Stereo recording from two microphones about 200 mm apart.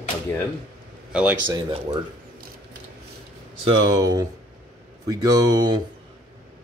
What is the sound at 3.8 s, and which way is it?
Speech, 20° right (ahead or behind).